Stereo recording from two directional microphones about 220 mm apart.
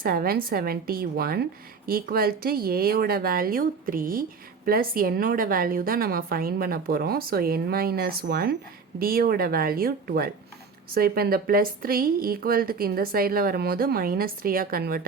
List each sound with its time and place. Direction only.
0.0 s a woman's voice: 40° right (ahead or behind)